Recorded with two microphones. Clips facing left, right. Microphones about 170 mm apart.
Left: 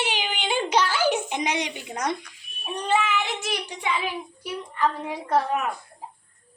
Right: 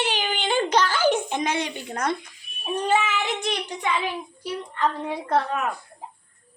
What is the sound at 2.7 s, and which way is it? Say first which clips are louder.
Child singing: right 1 dB; 5° right (ahead or behind).